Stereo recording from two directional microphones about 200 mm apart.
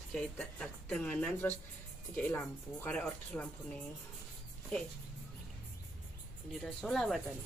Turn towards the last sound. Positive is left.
turn(degrees=0)  # may be behind; listen again after turning